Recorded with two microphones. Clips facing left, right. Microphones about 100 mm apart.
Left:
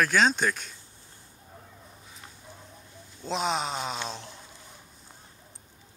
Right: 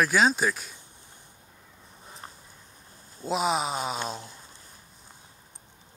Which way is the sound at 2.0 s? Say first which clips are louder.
Right 8 dB; 40° right (ahead or behind).